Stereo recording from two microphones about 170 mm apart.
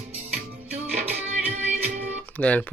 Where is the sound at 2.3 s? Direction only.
10° left (ahead or behind).